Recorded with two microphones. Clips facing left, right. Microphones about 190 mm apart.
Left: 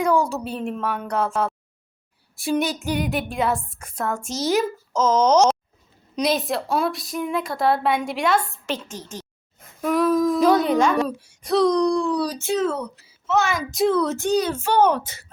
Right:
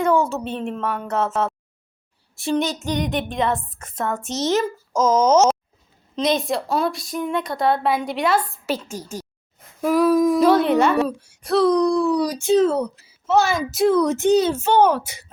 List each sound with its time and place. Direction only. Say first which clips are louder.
0.3 s a woman's voice: right 1 dB; centre (ahead or behind)
2.4 s a woman's voice: right 1 dB; 10° left (ahead or behind)
10.2 s a sound: right 3 dB; 15° right (ahead or behind)
10.4 s a woman's voice: right 2 dB; centre (ahead or behind)
12.5 s speech: right 7 dB; 35° right (ahead or behind)
13.7 s speech: right 3 dB; 5° right (ahead or behind); by 14.5 s 20° right (ahead or behind)
14.8 s speech: even; 10° right (ahead or behind)